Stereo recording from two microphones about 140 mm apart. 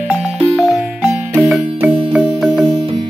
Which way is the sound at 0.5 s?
5° right (ahead or behind).